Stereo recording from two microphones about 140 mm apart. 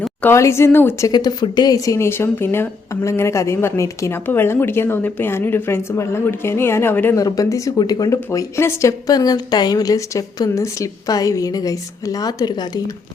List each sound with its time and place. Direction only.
0.0 s a sound: 10° left (ahead or behind)
0.3 s speech: 20° left (ahead or behind)
1.1 s speech: 30° left (ahead or behind)